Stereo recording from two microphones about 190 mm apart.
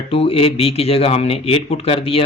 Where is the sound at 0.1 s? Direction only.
30° left (ahead or behind).